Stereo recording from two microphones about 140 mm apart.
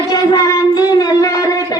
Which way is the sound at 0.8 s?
25° left (ahead or behind).